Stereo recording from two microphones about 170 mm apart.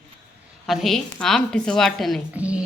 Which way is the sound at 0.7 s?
Centre (ahead or behind).